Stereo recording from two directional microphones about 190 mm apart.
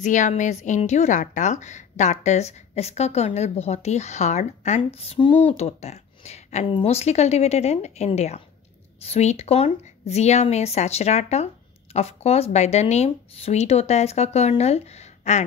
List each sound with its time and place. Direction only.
0.0 s a woman's voice: 40° left (ahead or behind)